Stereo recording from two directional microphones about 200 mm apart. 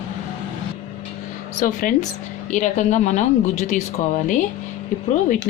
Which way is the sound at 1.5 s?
40° left (ahead or behind).